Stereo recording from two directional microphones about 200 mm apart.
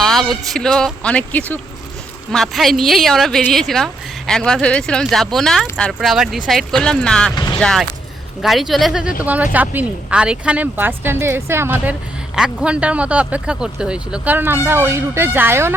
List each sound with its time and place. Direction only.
0.0 s speech: centre (ahead or behind)
7.3 s a sound: 20° left (ahead or behind)
7.6 s speech: 5° left (ahead or behind)